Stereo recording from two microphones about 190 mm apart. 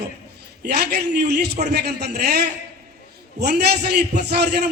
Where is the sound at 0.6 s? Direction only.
60° right (ahead or behind).